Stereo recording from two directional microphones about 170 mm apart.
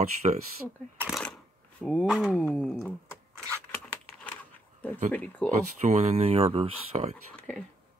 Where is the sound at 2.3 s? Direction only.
5° left (ahead or behind).